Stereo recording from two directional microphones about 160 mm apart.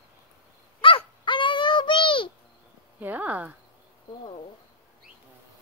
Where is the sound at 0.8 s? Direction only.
35° left (ahead or behind).